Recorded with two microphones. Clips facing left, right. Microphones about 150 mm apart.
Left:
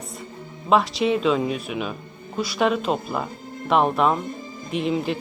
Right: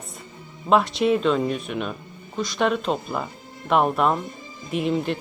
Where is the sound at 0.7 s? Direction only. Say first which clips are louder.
Right 1 dB; centre (ahead or behind).